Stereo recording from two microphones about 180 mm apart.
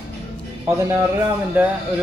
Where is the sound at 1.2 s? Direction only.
10° right (ahead or behind).